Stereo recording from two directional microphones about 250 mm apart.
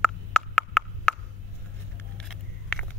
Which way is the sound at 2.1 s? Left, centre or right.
Centre.